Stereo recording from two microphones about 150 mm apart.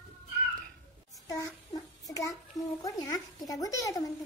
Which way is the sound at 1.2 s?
20° left (ahead or behind).